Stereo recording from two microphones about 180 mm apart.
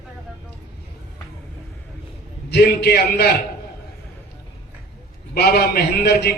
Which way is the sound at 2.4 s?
65° left (ahead or behind).